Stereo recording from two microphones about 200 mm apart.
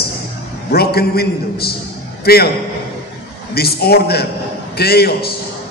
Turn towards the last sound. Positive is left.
turn(degrees=50)  # may be behind; listen again after turning